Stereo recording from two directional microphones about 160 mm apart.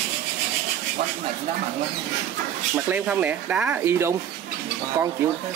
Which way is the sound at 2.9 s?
10° right (ahead or behind).